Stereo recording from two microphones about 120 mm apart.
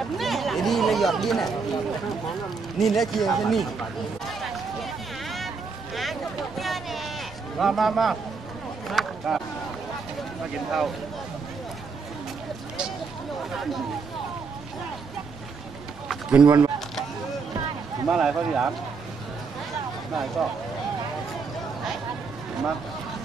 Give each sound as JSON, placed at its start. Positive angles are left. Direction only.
{"t": 0.2, "sound": "chatter", "side_deg": 0}
{"t": 2.8, "sound": "speech", "side_deg": 0}
{"t": 5.9, "sound": "a sound", "side_deg": 0}
{"t": 7.5, "sound": "speech", "side_deg": 0}
{"t": 8.8, "sound": "a sound", "side_deg": 0}
{"t": 10.5, "sound": "speech", "side_deg": 0}
{"t": 13.5, "sound": "speech", "side_deg": 0}
{"t": 16.1, "sound": "run", "side_deg": -10}
{"t": 16.4, "sound": "speech", "side_deg": -30}
{"t": 18.0, "sound": "speech", "side_deg": -5}